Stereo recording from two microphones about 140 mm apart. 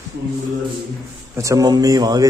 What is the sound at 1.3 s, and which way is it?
Speech, 25° right (ahead or behind).